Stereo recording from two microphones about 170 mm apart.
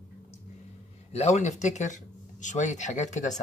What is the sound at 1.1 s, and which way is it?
Speech, 40° left (ahead or behind).